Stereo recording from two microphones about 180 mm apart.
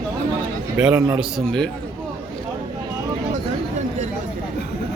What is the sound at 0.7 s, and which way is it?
Speech, 5° right (ahead or behind).